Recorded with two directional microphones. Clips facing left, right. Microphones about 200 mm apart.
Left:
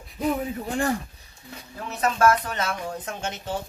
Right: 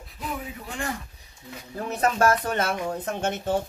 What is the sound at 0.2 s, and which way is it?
Speech, 40° left (ahead or behind).